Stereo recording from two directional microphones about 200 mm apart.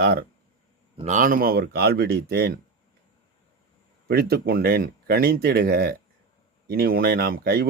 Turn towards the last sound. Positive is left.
turn(degrees=-50)  # may be behind; listen again after turning